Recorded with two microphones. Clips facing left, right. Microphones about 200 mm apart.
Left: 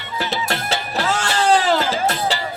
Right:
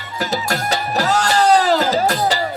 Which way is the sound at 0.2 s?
40° right (ahead or behind).